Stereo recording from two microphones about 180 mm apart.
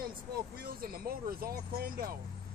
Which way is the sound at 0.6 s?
55° right (ahead or behind).